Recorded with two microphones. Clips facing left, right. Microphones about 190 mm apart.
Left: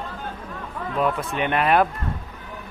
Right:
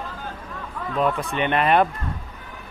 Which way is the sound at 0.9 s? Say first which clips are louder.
Right 1 dB; 5° left (ahead or behind).